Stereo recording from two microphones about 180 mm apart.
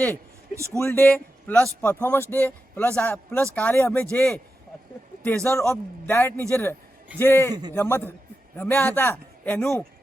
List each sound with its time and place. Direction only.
0.5 s speech: 15° right (ahead or behind)
0.8 s a man's voice: 15° left (ahead or behind)